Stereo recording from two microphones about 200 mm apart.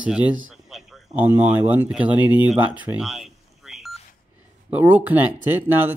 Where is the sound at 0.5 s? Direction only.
Centre (ahead or behind).